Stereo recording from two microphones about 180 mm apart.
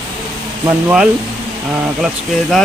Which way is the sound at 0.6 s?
10° right (ahead or behind).